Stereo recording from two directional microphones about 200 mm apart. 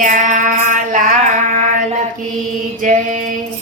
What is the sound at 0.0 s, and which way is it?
Mantra, 40° right (ahead or behind).